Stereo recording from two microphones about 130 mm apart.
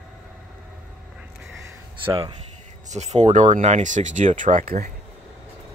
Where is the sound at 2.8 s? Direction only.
60° right (ahead or behind); by 4.8 s 80° right.